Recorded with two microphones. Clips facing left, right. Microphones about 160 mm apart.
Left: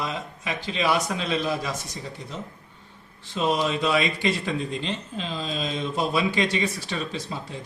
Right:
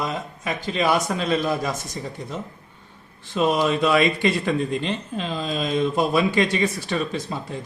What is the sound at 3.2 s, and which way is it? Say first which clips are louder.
A man's voice: right 4 dB; 55° right (ahead or behind).